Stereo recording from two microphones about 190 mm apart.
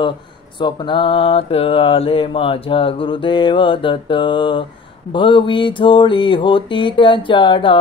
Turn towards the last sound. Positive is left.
turn(degrees=25)  # may be behind; listen again after turning